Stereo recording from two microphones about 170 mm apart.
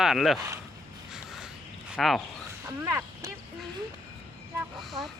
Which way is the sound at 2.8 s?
15° right (ahead or behind).